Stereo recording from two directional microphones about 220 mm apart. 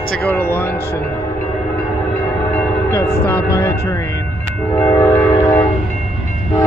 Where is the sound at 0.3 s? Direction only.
10° left (ahead or behind).